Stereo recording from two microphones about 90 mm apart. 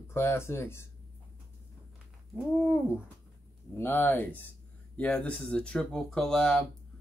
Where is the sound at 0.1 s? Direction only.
30° left (ahead or behind).